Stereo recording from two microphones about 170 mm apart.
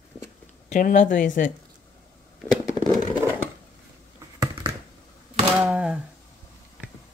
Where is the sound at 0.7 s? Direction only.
50° left (ahead or behind).